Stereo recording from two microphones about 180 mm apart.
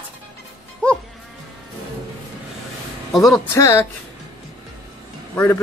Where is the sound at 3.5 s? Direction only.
20° left (ahead or behind).